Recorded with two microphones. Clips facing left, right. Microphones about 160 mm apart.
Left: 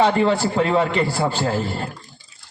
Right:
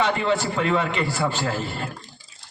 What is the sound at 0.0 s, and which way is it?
A man's voice, 35° left (ahead or behind).